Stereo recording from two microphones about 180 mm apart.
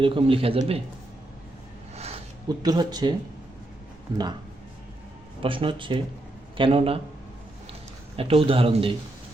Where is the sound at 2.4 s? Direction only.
20° right (ahead or behind).